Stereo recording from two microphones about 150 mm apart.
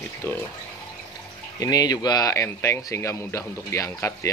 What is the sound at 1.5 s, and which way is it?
Speech, 25° left (ahead or behind).